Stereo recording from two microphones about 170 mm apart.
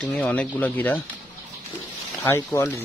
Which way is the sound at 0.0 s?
10° left (ahead or behind).